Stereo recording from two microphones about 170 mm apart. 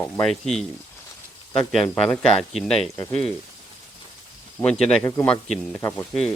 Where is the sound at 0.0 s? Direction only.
5° left (ahead or behind).